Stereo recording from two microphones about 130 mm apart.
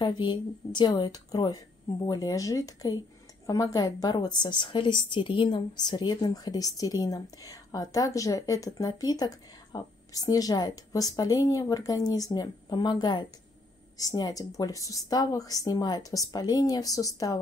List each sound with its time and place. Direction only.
0.0 s a woman's voice: 35° left (ahead or behind)